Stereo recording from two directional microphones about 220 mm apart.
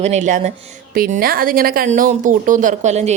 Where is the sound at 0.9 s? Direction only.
40° right (ahead or behind).